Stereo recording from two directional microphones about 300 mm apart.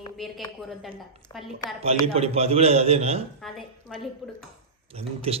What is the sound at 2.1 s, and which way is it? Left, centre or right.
A man's voice, centre.